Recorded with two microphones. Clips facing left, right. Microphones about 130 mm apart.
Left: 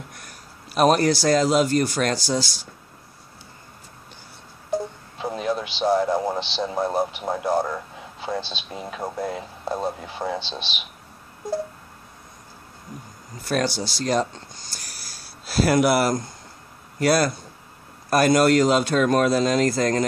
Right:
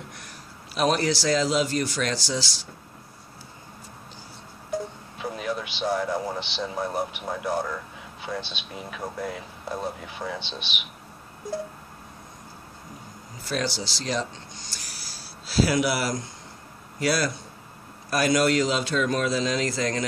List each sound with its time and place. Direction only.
0.7 s speech: 50° left (ahead or behind)
5.2 s a sound: 30° left (ahead or behind)
8.2 s speech: 30° left (ahead or behind)
13.5 s speech: 50° left (ahead or behind)